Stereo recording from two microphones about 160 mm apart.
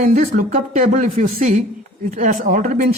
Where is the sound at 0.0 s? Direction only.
50° right (ahead or behind).